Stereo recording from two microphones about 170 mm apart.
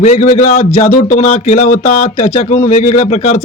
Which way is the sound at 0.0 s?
45° left (ahead or behind).